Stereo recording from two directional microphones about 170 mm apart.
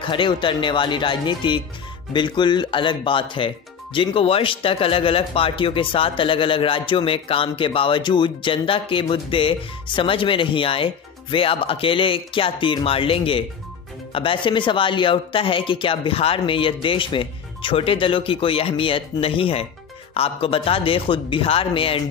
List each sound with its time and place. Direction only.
0.0 s speech: 30° left (ahead or behind)